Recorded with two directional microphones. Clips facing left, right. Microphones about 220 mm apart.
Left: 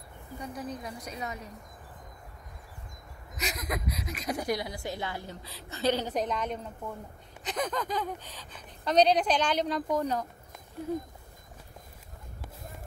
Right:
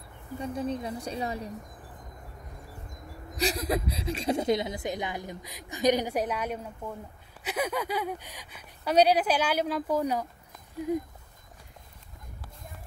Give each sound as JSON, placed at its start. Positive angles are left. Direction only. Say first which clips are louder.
{"t": 0.4, "sound": "a woman's voice", "louder": "right 6 dB", "side_deg": -25}
{"t": 3.3, "sound": "a woman's voice", "louder": "right 7 dB", "side_deg": -30}